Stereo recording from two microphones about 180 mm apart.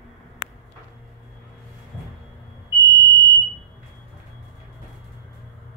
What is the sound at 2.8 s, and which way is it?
Smoke detector, 15° left (ahead or behind).